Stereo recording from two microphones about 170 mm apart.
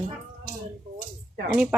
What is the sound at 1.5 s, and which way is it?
Speech, 5° right (ahead or behind).